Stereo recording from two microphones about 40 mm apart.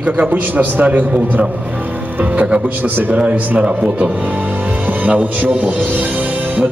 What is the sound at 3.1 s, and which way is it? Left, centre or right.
Speech, right.